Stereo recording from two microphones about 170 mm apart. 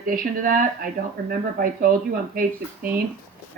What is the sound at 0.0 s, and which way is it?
Speech, 55° right (ahead or behind).